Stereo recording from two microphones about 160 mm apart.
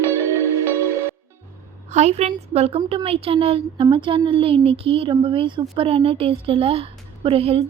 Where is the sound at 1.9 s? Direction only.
45° right (ahead or behind).